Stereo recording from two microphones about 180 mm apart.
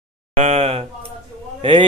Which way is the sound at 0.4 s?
35° right (ahead or behind).